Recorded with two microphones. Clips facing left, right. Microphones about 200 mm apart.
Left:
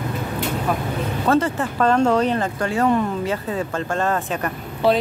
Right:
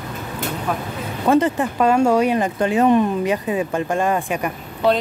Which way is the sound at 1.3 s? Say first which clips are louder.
Right 3 dB; 15° right (ahead or behind).